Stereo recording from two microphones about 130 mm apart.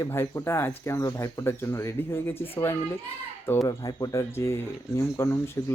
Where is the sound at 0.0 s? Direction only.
20° left (ahead or behind).